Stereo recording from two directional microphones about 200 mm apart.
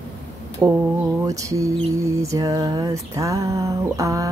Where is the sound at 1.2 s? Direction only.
15° right (ahead or behind).